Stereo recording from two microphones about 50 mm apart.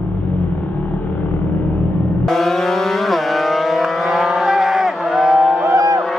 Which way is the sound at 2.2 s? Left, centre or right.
Centre.